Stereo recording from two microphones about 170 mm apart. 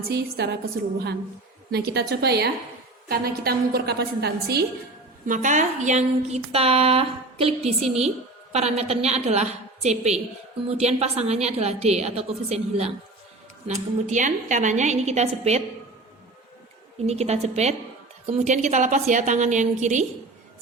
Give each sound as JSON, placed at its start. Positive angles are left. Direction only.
{"t": 0.1, "sound": "a woman's voice", "side_deg": -75}
{"t": 5.2, "sound": "a woman's voice", "side_deg": -50}
{"t": 17.1, "sound": "a woman's voice", "side_deg": -40}